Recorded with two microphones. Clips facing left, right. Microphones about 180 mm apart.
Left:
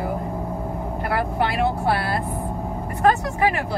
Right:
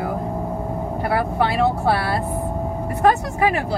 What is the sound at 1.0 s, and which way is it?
Speech, 25° right (ahead or behind).